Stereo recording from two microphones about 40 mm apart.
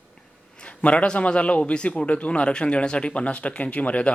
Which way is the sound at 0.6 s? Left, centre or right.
Left.